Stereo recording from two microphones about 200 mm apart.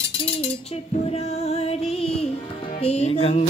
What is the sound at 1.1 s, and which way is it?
Music, 30° left (ahead or behind).